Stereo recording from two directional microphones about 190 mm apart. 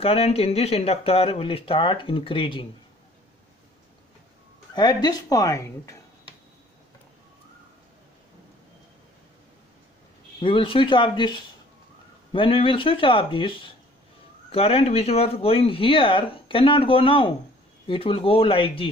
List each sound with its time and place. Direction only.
0.0 s speech: 30° left (ahead or behind)
4.7 s speech: 20° left (ahead or behind)
10.4 s speech: 30° left (ahead or behind)